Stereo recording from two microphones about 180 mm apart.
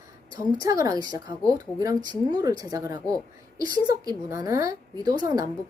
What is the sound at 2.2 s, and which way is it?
Speech, 20° right (ahead or behind).